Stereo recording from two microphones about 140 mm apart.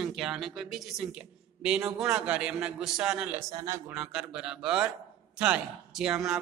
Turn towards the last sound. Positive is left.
turn(degrees=-5)  # may be behind; listen again after turning